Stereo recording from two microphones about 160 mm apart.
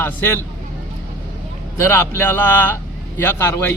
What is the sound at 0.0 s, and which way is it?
Speech, 15° left (ahead or behind).